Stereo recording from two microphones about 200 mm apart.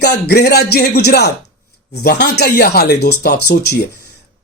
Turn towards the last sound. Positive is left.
turn(degrees=55)  # may be behind; listen again after turning